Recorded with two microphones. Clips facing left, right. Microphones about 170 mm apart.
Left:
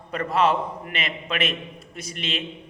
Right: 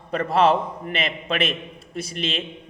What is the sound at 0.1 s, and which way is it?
A man's voice, 30° right (ahead or behind).